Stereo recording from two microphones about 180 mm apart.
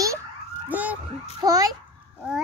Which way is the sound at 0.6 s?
10° right (ahead or behind).